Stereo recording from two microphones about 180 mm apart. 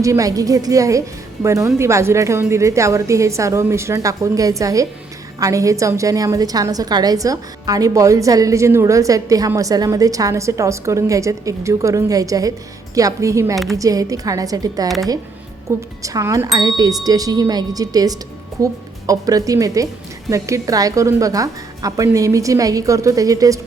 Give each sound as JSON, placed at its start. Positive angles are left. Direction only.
{"t": 0.0, "sound": "a woman's voice", "side_deg": -20}
{"t": 14.8, "sound": "speech", "side_deg": 0}
{"t": 15.7, "sound": "a woman's voice", "side_deg": -15}